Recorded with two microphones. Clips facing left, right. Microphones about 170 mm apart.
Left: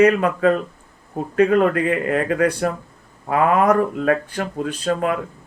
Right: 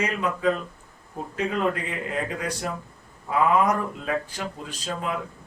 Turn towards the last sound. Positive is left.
turn(degrees=60)  # may be behind; listen again after turning